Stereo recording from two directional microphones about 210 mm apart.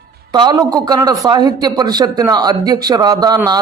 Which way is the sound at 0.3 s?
20° right (ahead or behind).